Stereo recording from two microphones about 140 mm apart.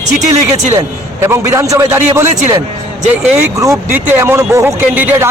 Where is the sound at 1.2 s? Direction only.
20° right (ahead or behind).